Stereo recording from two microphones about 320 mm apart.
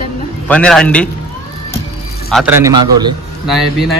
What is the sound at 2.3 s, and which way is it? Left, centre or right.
Speech, centre.